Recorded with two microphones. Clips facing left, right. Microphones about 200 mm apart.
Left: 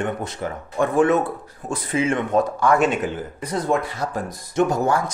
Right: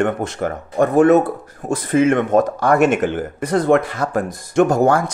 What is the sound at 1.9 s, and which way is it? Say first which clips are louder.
Speech: right 6 dB; 60° right (ahead or behind).